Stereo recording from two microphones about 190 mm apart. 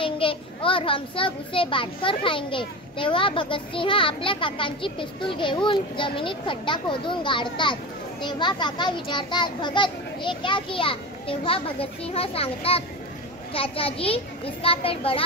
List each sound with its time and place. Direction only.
0.0 s a child's voice: 25° left (ahead or behind)